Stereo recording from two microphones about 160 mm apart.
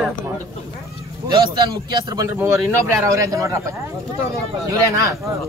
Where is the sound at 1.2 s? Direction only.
30° right (ahead or behind).